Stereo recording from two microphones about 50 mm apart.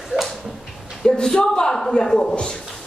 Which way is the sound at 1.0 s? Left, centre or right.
Centre.